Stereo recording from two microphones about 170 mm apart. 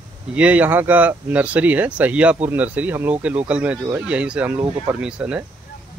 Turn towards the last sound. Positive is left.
turn(degrees=-5)  # may be behind; listen again after turning